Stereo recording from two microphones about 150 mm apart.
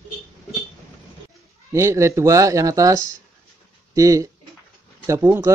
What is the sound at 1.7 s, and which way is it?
Speech, 20° right (ahead or behind).